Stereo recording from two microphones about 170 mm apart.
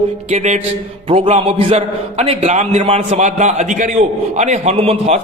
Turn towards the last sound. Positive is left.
turn(degrees=-35)  # may be behind; listen again after turning